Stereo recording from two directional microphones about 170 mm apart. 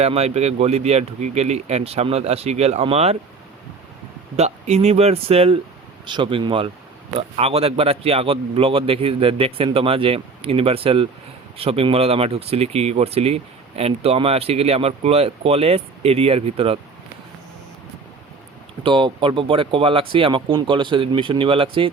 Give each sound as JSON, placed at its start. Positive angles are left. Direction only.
{"t": 0.0, "sound": "speech", "side_deg": -40}
{"t": 4.4, "sound": "speech", "side_deg": -40}
{"t": 18.8, "sound": "speech", "side_deg": -30}